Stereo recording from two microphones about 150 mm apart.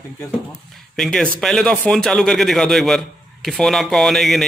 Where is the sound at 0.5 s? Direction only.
Centre (ahead or behind).